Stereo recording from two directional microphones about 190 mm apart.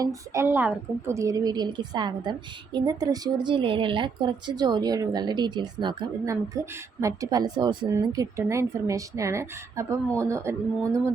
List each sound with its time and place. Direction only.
0.0 s speech: 15° right (ahead or behind)